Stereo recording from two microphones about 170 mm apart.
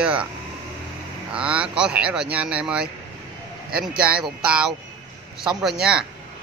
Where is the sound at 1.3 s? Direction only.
5° right (ahead or behind).